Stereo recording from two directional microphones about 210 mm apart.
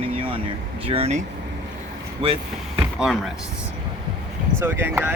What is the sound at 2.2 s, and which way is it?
Speech, 25° right (ahead or behind).